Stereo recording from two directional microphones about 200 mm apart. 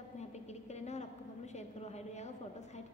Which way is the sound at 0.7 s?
35° left (ahead or behind).